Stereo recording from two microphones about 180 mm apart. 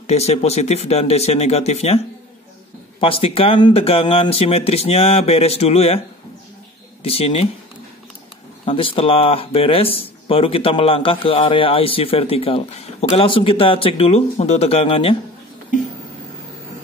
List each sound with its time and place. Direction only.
0.0 s speech: 35° left (ahead or behind)
3.0 s speech: 30° left (ahead or behind)
7.0 s speech: 35° left (ahead or behind)
8.6 s speech: 30° left (ahead or behind)